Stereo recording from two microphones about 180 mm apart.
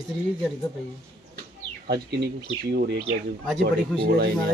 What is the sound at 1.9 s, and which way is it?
Speech, 65° right (ahead or behind).